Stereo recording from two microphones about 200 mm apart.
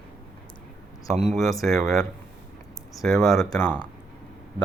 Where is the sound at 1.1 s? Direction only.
30° right (ahead or behind).